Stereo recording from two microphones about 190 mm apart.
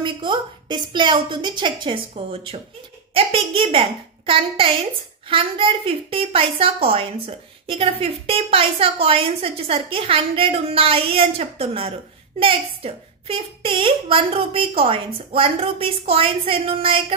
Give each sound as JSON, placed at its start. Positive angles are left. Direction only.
{"t": 0.0, "sound": "a woman's voice", "side_deg": -25}